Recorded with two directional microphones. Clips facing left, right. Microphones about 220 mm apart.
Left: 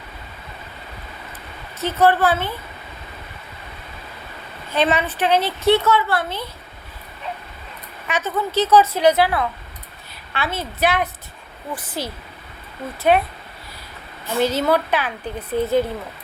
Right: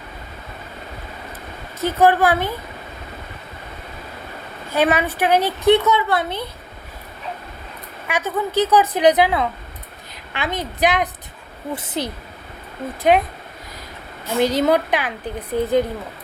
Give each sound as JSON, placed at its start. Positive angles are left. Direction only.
{"t": 1.8, "sound": "a woman's voice", "side_deg": -15}
{"t": 4.7, "sound": "a woman's voice", "side_deg": -10}
{"t": 8.0, "sound": "a woman's voice", "side_deg": -10}
{"t": 14.3, "sound": "a woman's voice", "side_deg": -15}